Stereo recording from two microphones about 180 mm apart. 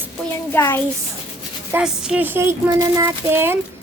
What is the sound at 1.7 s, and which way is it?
Speech, 5° right (ahead or behind).